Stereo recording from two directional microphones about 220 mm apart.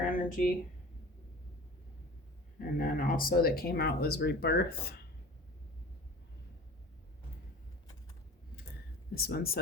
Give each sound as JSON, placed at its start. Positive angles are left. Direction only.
{"t": 0.0, "sound": "a sound", "side_deg": 35}
{"t": 2.6, "sound": "speech", "side_deg": 40}
{"t": 9.1, "sound": "speech", "side_deg": 45}